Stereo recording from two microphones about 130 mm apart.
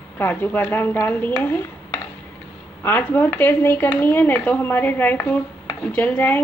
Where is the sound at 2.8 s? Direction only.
15° left (ahead or behind).